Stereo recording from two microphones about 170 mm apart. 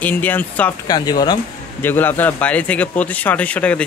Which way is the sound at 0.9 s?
25° left (ahead or behind).